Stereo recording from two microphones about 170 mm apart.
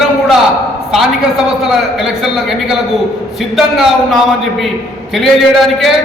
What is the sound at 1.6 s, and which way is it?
A man's voice, centre (ahead or behind).